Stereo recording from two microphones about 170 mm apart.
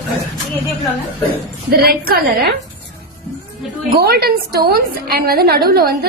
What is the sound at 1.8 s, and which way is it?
Speech, 65° right (ahead or behind).